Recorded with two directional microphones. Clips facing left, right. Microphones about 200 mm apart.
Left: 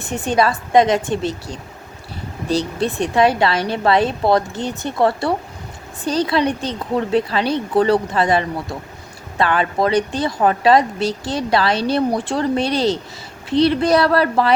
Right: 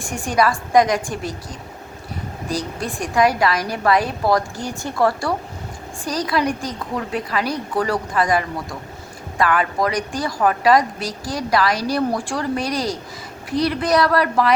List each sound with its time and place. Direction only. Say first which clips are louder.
0.1 s speech: left 2 dB; 25° left (ahead or behind)